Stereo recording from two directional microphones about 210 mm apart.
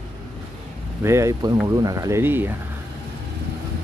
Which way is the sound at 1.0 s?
15° right (ahead or behind).